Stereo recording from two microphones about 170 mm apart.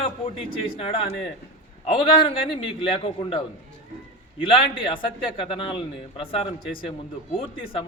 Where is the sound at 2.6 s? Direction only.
30° left (ahead or behind).